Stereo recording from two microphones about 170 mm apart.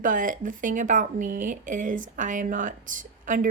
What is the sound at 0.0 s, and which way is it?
Speech, 50° right (ahead or behind).